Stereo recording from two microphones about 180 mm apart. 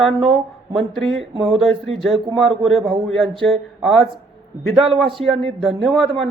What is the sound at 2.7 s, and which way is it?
Speech, 30° right (ahead or behind).